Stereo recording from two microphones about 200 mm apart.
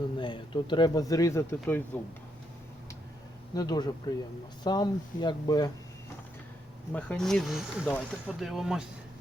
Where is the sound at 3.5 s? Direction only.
20° left (ahead or behind).